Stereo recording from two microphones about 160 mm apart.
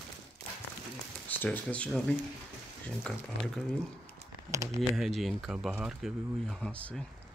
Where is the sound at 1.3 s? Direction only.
10° left (ahead or behind).